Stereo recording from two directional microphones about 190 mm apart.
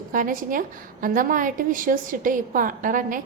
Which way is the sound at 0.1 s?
45° right (ahead or behind).